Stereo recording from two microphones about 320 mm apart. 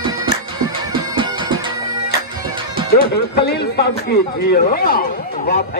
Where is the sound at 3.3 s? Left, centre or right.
Left.